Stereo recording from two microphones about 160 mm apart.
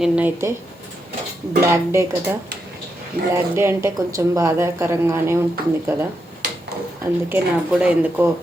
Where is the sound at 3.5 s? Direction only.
15° right (ahead or behind).